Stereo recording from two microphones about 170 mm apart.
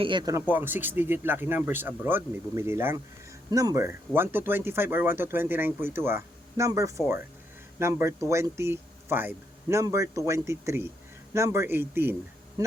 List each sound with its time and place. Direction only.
0.0 s speech: 25° right (ahead or behind)
0.5 s speech: 10° right (ahead or behind)